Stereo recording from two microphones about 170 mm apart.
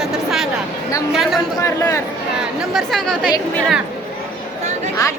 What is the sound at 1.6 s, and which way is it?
Speech, 20° left (ahead or behind).